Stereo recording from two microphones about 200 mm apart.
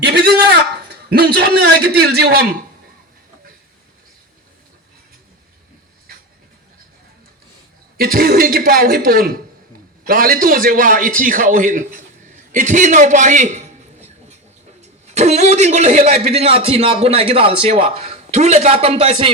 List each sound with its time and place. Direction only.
0.0 s a man's voice: 55° right (ahead or behind)
7.9 s a man's voice: 45° right (ahead or behind)
15.0 s a man's voice: 35° right (ahead or behind)